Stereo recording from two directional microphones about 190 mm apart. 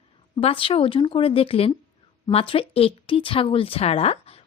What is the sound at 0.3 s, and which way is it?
A woman's voice, 30° left (ahead or behind).